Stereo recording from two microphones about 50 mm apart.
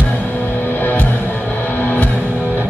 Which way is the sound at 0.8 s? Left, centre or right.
Left.